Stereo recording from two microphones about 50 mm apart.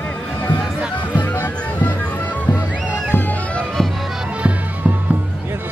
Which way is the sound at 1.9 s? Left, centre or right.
Left.